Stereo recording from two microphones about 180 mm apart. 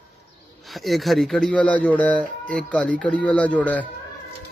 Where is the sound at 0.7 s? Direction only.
Centre (ahead or behind).